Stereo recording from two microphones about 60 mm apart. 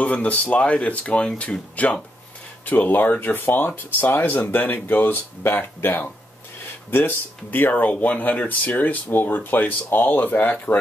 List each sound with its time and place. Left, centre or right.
0.0 s speech: left